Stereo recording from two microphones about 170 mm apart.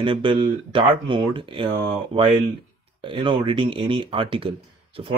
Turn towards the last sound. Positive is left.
turn(degrees=-30)  # may be behind; listen again after turning